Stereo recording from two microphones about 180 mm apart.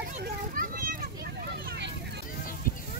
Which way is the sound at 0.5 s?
50° right (ahead or behind).